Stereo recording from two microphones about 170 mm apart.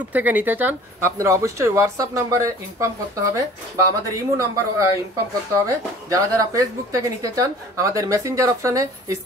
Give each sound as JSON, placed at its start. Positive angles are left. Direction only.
{"t": 0.1, "sound": "speech", "side_deg": -10}